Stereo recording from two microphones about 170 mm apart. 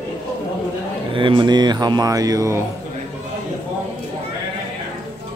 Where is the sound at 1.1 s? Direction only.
30° right (ahead or behind).